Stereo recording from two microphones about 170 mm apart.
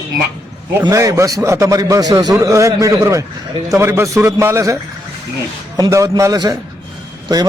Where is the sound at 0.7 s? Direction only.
15° right (ahead or behind).